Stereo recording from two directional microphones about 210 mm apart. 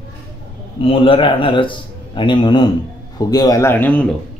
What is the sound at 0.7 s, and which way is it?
A man's voice, 25° left (ahead or behind).